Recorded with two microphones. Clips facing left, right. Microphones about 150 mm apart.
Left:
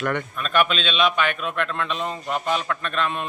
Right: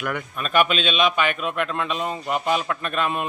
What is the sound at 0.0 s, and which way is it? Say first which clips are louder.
A man's voice: left 2 dB; 10° right (ahead or behind).